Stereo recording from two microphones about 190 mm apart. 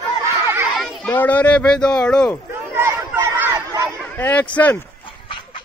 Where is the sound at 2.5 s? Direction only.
10° right (ahead or behind).